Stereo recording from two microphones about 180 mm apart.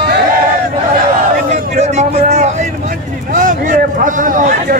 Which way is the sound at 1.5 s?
40° right (ahead or behind).